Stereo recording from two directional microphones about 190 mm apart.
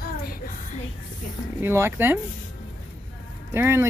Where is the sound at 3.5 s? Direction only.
15° right (ahead or behind).